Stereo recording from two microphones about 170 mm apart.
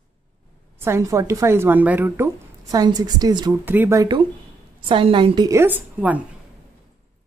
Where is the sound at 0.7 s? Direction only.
15° right (ahead or behind).